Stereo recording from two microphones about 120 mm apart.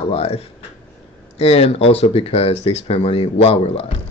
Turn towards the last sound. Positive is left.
turn(degrees=55)  # may be behind; listen again after turning